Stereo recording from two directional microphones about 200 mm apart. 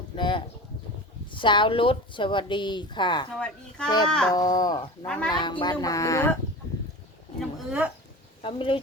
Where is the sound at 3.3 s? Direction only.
5° left (ahead or behind).